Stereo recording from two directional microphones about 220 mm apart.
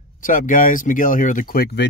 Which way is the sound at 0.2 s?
35° left (ahead or behind).